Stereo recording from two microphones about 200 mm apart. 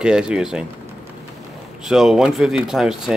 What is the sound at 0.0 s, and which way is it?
Speech, 5° right (ahead or behind).